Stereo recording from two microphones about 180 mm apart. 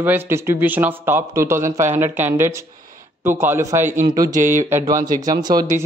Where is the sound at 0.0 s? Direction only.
10° right (ahead or behind).